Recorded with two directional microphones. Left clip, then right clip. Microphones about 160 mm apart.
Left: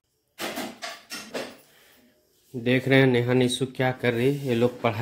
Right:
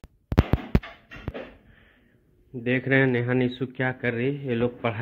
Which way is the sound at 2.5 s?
30° left (ahead or behind).